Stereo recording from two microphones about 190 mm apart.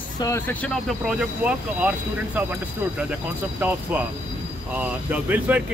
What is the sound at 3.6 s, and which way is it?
Speech, 10° right (ahead or behind).